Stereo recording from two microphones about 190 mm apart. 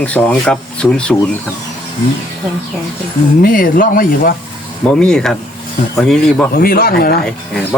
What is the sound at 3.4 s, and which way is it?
Speech, 45° left (ahead or behind).